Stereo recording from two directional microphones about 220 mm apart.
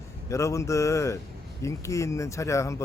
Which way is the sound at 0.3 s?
15° left (ahead or behind).